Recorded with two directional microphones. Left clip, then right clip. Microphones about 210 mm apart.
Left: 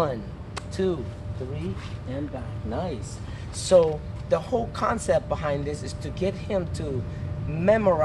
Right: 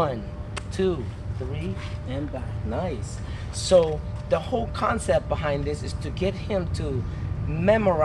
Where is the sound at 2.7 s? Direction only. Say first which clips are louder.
Right 1 dB; 10° right (ahead or behind).